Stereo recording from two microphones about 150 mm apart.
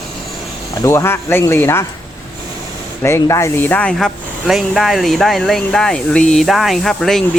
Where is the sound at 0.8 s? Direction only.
15° left (ahead or behind).